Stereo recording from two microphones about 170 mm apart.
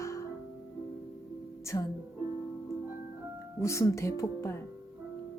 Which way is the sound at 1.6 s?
20° left (ahead or behind).